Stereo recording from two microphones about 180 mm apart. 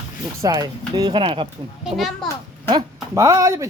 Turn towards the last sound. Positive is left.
turn(degrees=-15)  # may be behind; listen again after turning